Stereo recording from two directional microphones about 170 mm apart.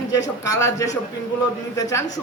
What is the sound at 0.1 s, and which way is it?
Speech, 20° left (ahead or behind).